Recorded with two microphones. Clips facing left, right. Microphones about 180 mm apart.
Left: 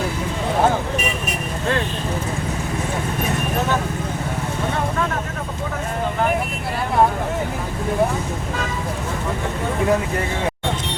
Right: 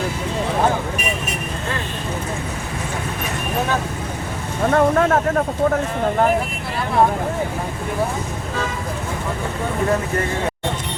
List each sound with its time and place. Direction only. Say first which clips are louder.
4.7 s vehicle: right 10 dB; 55° right (ahead or behind)